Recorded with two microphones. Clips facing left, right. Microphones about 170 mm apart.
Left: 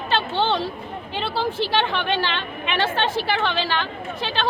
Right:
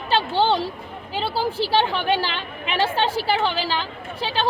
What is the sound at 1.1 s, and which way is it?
A woman's voice, 35° right (ahead or behind).